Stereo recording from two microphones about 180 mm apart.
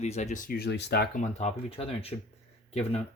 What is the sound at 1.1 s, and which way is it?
Speech, 40° left (ahead or behind).